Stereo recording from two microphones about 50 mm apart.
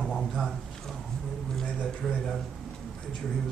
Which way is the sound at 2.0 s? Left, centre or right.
Centre.